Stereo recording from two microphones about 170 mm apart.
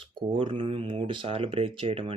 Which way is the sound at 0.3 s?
30° right (ahead or behind).